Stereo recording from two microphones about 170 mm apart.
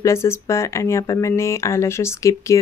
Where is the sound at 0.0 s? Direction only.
15° left (ahead or behind).